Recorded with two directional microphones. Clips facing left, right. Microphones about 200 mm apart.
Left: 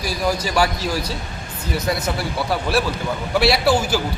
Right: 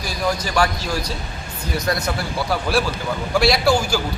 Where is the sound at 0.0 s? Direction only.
5° left (ahead or behind).